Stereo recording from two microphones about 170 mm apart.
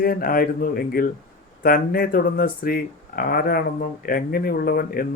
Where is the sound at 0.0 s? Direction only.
60° left (ahead or behind).